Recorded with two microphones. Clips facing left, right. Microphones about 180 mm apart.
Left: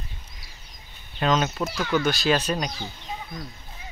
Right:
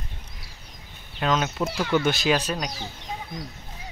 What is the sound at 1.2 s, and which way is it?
Speech, 5° right (ahead or behind).